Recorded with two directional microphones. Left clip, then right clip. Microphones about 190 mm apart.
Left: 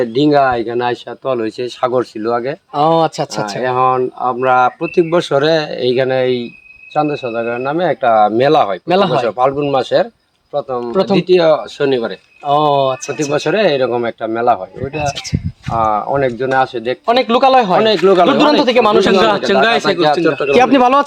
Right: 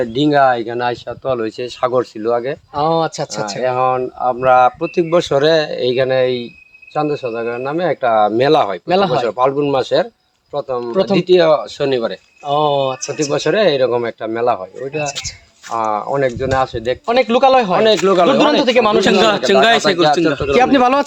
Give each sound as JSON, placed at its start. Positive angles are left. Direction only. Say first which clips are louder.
{"t": 0.0, "sound": "speech", "louder": "left 1 dB", "side_deg": -5}
{"t": 2.7, "sound": "speech", "louder": "left 4 dB", "side_deg": 35}
{"t": 3.6, "sound": "speech", "louder": "left 2 dB", "side_deg": 0}
{"t": 8.9, "sound": "speech", "louder": "left 1 dB", "side_deg": 30}
{"t": 9.2, "sound": "speech", "louder": "left 1 dB", "side_deg": -5}
{"t": 12.5, "sound": "speech", "louder": "left 3 dB", "side_deg": 25}
{"t": 13.3, "sound": "speech", "louder": "left 1 dB", "side_deg": -10}
{"t": 17.1, "sound": "speech", "louder": "left 1 dB", "side_deg": 30}
{"t": 17.8, "sound": "speech", "louder": "left 2 dB", "side_deg": -10}
{"t": 18.3, "sound": "speech", "louder": "left 1 dB", "side_deg": 20}
{"t": 19.5, "sound": "speech", "louder": "right 1 dB", "side_deg": -35}
{"t": 20.5, "sound": "speech", "louder": "left 2 dB", "side_deg": 20}